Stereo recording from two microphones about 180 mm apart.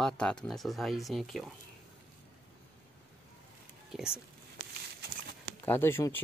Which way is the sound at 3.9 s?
5° right (ahead or behind).